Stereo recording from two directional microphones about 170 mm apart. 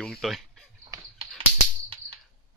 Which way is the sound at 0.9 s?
20° right (ahead or behind).